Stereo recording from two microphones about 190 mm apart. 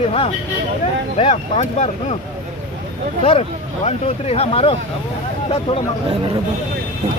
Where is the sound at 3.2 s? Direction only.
30° left (ahead or behind).